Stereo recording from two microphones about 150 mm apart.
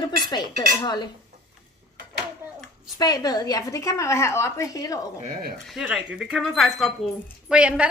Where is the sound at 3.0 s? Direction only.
25° left (ahead or behind).